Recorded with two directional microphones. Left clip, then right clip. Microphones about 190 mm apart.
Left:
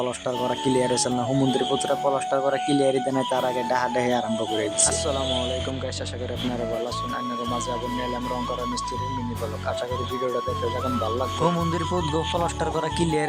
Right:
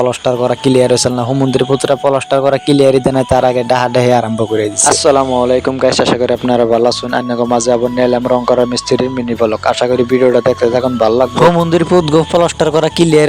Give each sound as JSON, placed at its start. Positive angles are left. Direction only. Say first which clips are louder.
{"t": 0.0, "sound": "speech", "louder": "right 13 dB", "side_deg": -35}
{"t": 5.0, "sound": "speech", "louder": "right 16 dB", "side_deg": -50}
{"t": 11.0, "sound": "speech", "louder": "right 17 dB", "side_deg": -45}